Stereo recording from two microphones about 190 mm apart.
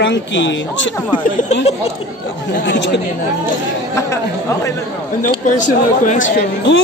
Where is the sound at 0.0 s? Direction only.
70° left (ahead or behind).